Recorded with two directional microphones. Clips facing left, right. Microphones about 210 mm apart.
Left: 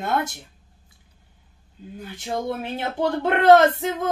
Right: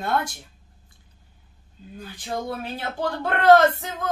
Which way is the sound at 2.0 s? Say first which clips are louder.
Left 2 dB; 25° left (ahead or behind).